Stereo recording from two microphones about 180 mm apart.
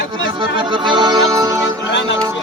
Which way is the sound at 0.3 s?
25° right (ahead or behind).